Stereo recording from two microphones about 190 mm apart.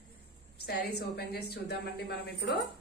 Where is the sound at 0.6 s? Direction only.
60° left (ahead or behind).